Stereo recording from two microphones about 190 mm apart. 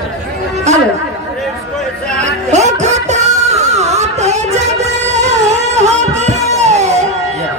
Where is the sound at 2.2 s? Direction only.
35° right (ahead or behind).